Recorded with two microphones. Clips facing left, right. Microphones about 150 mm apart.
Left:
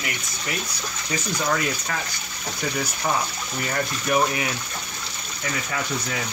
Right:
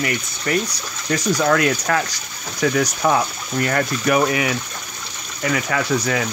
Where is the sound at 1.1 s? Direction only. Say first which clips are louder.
Right 8 dB; 85° right.